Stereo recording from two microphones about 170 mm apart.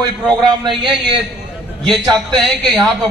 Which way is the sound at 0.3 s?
Centre (ahead or behind).